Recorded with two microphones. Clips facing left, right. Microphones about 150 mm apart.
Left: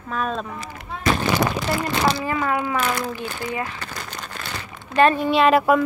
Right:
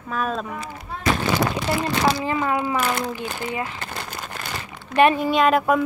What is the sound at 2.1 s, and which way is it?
Speech, 15° right (ahead or behind).